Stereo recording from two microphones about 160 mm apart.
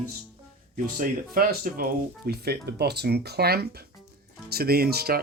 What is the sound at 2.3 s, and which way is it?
Speech, 85° right.